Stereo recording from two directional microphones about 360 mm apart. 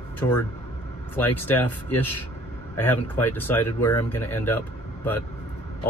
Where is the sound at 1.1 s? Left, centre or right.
Centre.